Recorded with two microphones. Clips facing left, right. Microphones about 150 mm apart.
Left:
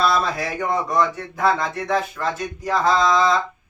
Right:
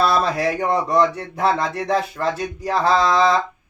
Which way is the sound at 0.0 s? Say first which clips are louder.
Right 2 dB; 35° right (ahead or behind).